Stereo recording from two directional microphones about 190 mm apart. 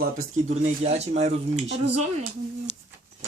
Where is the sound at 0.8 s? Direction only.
35° right (ahead or behind).